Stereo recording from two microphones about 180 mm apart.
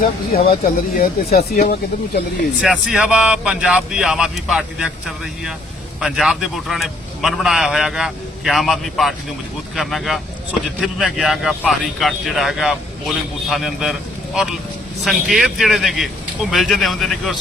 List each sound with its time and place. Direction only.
0.6 s speech: 55° left (ahead or behind)
2.6 s a man's voice: 5° right (ahead or behind)
15.0 s a man's voice: centre (ahead or behind)